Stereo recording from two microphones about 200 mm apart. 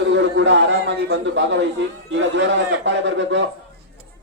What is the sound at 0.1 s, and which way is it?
A man's voice, 65° right (ahead or behind).